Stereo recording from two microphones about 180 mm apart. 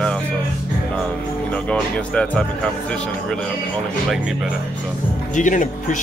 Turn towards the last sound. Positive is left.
turn(degrees=45)  # may be behind; listen again after turning